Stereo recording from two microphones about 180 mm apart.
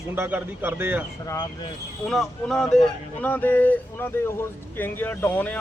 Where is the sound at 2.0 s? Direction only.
Centre (ahead or behind).